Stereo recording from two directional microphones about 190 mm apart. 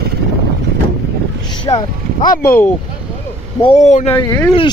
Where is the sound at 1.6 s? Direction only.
20° left (ahead or behind).